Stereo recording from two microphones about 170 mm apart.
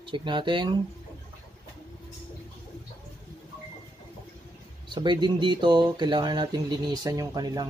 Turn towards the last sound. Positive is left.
turn(degrees=-20)  # may be behind; listen again after turning